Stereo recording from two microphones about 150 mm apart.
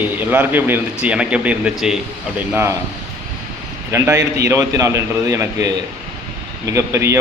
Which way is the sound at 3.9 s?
20° right (ahead or behind).